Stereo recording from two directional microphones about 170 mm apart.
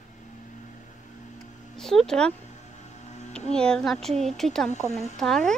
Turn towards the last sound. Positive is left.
turn(degrees=5)  # may be behind; listen again after turning